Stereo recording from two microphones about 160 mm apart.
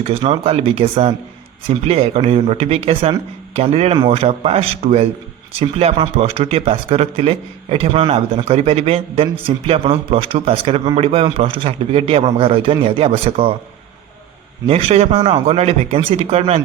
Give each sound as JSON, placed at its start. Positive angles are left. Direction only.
{"t": 0.0, "sound": "speech", "side_deg": -35}
{"t": 14.7, "sound": "speech", "side_deg": -35}